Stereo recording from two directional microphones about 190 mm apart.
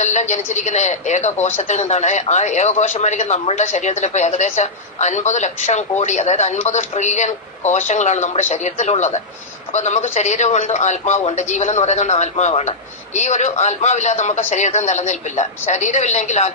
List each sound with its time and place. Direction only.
0.0 s a man's voice: 40° left (ahead or behind)